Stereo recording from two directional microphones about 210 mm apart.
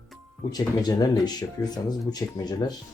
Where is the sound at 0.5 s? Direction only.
20° left (ahead or behind).